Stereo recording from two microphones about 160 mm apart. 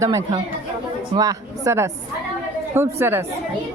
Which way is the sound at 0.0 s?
20° right (ahead or behind).